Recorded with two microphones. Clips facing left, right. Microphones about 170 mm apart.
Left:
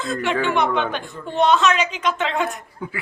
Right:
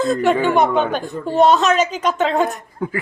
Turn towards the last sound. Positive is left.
turn(degrees=-45)  # may be behind; listen again after turning